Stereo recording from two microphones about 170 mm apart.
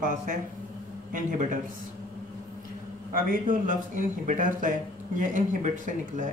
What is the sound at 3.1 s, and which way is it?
A man's voice, 55° right (ahead or behind).